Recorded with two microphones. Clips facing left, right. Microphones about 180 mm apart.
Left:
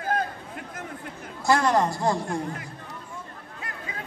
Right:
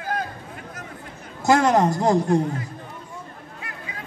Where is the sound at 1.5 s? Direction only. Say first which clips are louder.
Right 4 dB; 20° right (ahead or behind).